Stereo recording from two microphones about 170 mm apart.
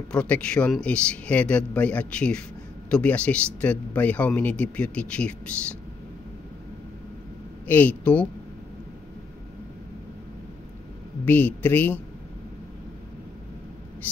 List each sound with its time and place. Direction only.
0.1 s speech: 5° left (ahead or behind)
7.6 s speech: 10° left (ahead or behind)
11.2 s speech: 10° left (ahead or behind)